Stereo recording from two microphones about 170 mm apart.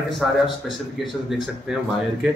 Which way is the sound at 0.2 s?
Centre (ahead or behind).